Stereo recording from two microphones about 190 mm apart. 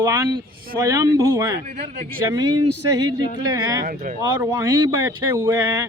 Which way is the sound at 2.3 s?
20° right (ahead or behind).